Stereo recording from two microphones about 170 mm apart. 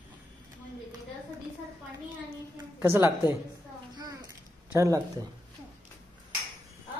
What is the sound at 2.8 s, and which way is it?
Speech, 15° right (ahead or behind).